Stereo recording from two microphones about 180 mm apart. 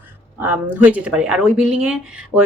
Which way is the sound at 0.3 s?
10° right (ahead or behind).